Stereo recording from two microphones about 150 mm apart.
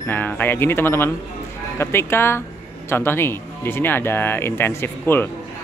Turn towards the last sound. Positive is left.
turn(degrees=15)  # may be behind; listen again after turning